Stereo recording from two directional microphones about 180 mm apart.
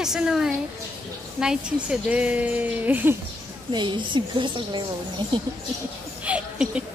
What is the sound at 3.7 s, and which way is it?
A woman's voice, 25° right (ahead or behind).